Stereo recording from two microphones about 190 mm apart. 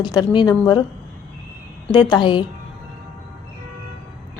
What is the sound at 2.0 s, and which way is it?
Speech, 25° left (ahead or behind).